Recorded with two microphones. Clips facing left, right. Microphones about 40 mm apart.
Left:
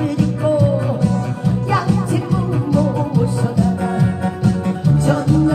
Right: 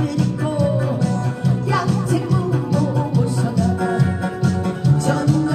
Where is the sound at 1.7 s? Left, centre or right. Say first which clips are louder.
Left 2 dB; centre.